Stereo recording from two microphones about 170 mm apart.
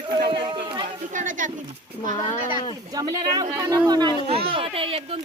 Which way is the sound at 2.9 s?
20° right (ahead or behind).